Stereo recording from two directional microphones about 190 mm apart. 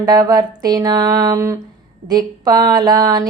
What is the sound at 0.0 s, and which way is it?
A woman's voice, 20° right (ahead or behind).